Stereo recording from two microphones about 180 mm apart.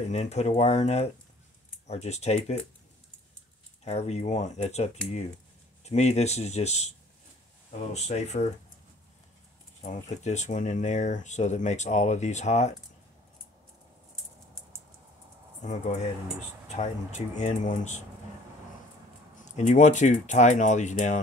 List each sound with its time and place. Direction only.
0.1 s speech: 40° left (ahead or behind)
3.8 s speech: 35° left (ahead or behind)
5.9 s speech: 40° left (ahead or behind)
7.9 s speech: 40° left (ahead or behind)
9.8 s speech: 40° left (ahead or behind)
15.6 s speech: 40° left (ahead or behind)
19.5 s speech: 45° left (ahead or behind)